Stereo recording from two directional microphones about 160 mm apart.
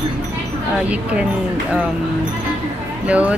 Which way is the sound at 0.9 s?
10° right (ahead or behind).